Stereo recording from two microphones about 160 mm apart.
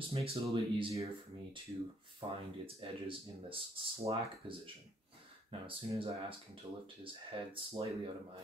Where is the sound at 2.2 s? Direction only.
30° right (ahead or behind).